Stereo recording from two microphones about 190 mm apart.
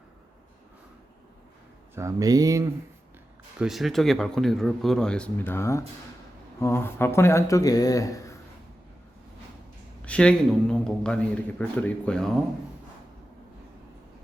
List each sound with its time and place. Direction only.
2.0 s speech: 15° right (ahead or behind)
3.6 s speech: centre (ahead or behind); by 8.4 s 15° left (ahead or behind)
10.0 s speech: 5° left (ahead or behind)